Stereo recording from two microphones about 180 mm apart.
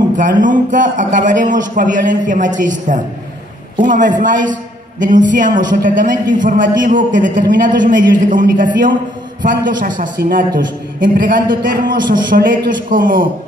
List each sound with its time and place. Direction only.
0.4 s a man's voice: 45° right (ahead or behind)